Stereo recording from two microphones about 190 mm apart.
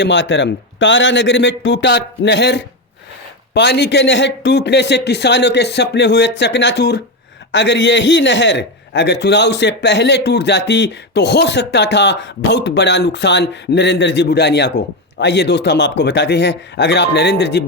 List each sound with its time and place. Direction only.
0.0 s a man's voice: 70° left (ahead or behind)